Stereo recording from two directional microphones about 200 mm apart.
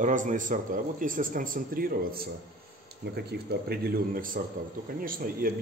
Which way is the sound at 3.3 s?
50° right (ahead or behind).